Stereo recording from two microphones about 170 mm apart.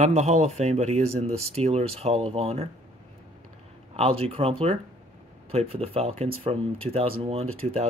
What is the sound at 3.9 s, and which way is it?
Speech, 35° right (ahead or behind).